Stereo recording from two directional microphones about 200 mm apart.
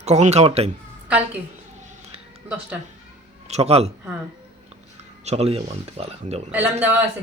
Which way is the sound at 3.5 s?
30° right (ahead or behind).